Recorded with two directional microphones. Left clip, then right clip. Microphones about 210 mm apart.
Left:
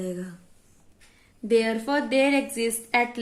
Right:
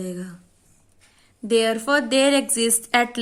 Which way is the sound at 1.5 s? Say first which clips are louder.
Right 4 dB; 30° right (ahead or behind).